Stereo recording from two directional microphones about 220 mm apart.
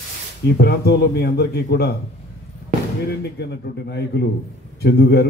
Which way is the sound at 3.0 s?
50° left (ahead or behind).